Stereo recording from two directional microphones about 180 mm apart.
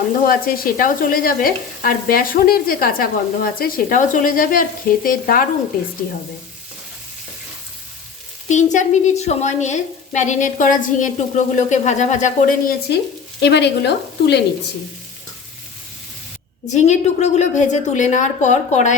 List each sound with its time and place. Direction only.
0.3 s stir: 55° left (ahead or behind)
8.4 s stir: 40° left (ahead or behind)
13.4 s speech: 70° left (ahead or behind)
16.7 s a woman's voice: 40° left (ahead or behind)